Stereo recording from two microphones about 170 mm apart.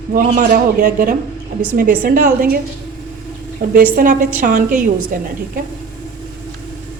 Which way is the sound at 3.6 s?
55° right (ahead or behind).